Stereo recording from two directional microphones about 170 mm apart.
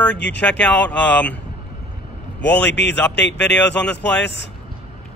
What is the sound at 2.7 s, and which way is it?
Speech, 90° left.